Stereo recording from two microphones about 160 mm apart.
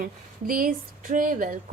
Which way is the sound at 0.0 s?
60° right (ahead or behind).